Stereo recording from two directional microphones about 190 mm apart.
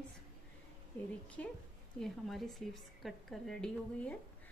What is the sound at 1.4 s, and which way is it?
A woman's voice, 10° left (ahead or behind).